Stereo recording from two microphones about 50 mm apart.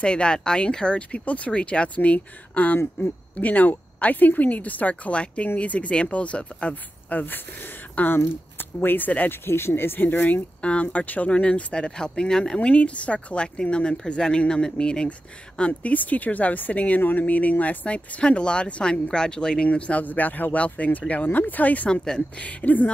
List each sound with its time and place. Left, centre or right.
0.0 s a woman's voice: centre; by 9.4 s left
9.4 s speech: left
10.6 s speech: left
12.5 s a woman's voice: left